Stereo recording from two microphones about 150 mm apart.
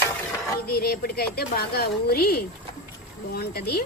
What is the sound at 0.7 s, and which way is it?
A woman's voice, 90° left.